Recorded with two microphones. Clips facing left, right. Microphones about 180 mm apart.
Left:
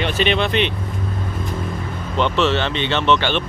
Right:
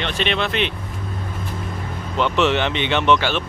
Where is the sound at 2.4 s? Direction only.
15° right (ahead or behind).